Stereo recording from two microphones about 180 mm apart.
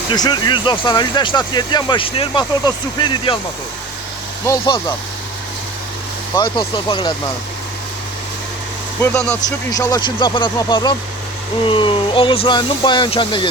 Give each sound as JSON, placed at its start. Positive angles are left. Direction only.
{"t": 0.1, "sound": "speech", "side_deg": 25}
{"t": 4.4, "sound": "speech", "side_deg": 20}
{"t": 6.3, "sound": "speech", "side_deg": 25}
{"t": 9.0, "sound": "speech", "side_deg": 10}
{"t": 9.7, "sound": "speech", "side_deg": 25}